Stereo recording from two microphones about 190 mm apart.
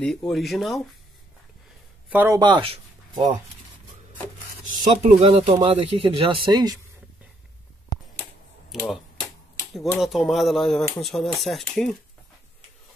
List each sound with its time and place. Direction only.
0.3 s speech: centre (ahead or behind)
2.0 s speech: 10° right (ahead or behind)
4.9 s speech: 35° right (ahead or behind)
8.8 s typewriter: centre (ahead or behind)
9.9 s speech: centre (ahead or behind)